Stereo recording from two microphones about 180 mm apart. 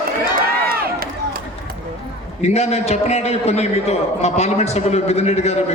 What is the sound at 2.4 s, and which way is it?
A man's voice, 35° left (ahead or behind).